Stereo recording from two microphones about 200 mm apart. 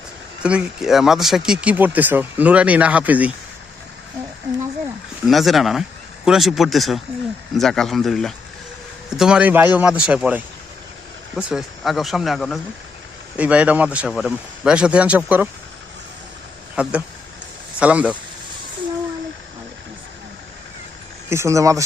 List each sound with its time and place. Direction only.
0.4 s speech: 5° right (ahead or behind)
5.2 s a man's voice: centre (ahead or behind)
16.8 s a man's voice: 5° right (ahead or behind)
21.2 s speech: 15° right (ahead or behind)